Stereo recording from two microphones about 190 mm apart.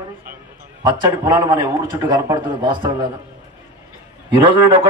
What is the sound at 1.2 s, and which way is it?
A man's voice, 20° right (ahead or behind).